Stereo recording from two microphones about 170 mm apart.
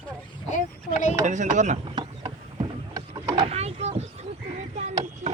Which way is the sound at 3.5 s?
40° right (ahead or behind).